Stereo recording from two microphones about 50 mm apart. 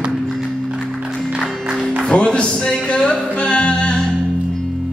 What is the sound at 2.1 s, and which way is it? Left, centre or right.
Music, left.